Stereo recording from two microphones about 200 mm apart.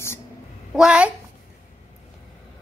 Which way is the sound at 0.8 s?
5° right (ahead or behind).